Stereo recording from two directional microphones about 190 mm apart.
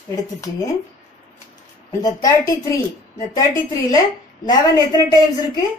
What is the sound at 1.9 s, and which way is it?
A woman's voice, 20° left (ahead or behind).